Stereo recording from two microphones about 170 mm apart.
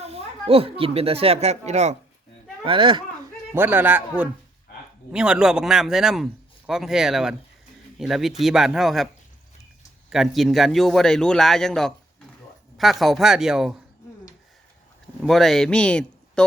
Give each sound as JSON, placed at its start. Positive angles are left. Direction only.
{"t": 0.0, "sound": "speech", "side_deg": -35}
{"t": 2.6, "sound": "speech", "side_deg": -30}
{"t": 3.5, "sound": "a man's voice", "side_deg": -10}
{"t": 10.1, "sound": "a man's voice", "side_deg": 0}
{"t": 15.2, "sound": "speech", "side_deg": 0}